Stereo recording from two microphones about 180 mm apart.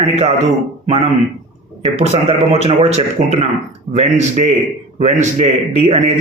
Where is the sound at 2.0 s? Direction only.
35° right (ahead or behind).